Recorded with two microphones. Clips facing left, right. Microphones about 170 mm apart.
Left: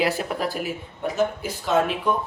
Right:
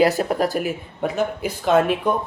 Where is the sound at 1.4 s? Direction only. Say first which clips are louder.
Right 4 dB; 55° right (ahead or behind).